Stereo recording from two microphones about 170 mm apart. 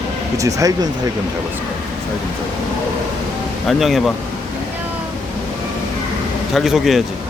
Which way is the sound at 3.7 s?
Centre (ahead or behind).